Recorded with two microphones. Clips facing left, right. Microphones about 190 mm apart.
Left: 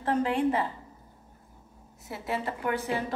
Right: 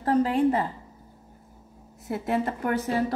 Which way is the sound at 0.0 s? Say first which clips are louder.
Right 4 dB; 40° right (ahead or behind).